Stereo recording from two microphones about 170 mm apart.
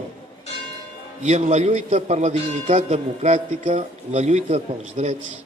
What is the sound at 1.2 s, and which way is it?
A man's voice, 40° right (ahead or behind).